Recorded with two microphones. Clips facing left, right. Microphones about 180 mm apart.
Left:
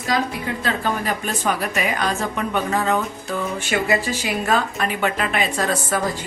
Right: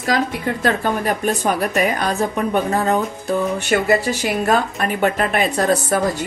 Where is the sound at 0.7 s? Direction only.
50° right (ahead or behind).